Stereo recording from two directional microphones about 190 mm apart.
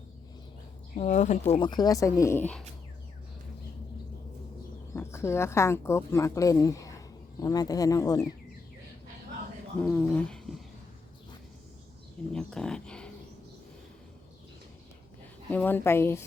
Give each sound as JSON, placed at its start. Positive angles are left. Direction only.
{"t": 0.9, "sound": "speech", "side_deg": 40}
{"t": 1.5, "sound": "speech", "side_deg": 25}
{"t": 4.9, "sound": "speech", "side_deg": 15}
{"t": 9.8, "sound": "speech", "side_deg": 5}
{"t": 12.3, "sound": "speech", "side_deg": 5}
{"t": 15.4, "sound": "speech", "side_deg": 10}